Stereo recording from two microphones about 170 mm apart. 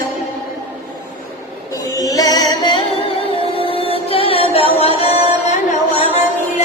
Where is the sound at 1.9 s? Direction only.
20° left (ahead or behind).